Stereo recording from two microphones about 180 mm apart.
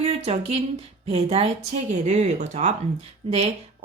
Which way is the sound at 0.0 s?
35° right (ahead or behind).